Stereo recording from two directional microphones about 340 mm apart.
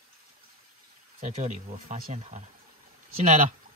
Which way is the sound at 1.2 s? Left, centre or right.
Right.